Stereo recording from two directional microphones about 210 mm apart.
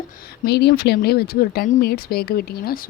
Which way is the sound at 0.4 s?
50° left (ahead or behind).